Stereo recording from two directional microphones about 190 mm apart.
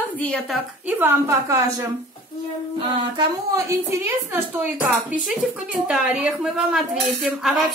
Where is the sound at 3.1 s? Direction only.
15° right (ahead or behind).